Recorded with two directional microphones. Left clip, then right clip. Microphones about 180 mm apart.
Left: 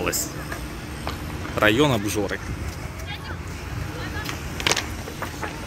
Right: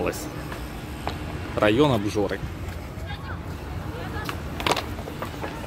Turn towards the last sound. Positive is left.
turn(degrees=-55)  # may be behind; listen again after turning